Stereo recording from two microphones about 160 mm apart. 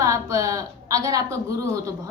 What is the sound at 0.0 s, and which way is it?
A woman's voice, 20° right (ahead or behind).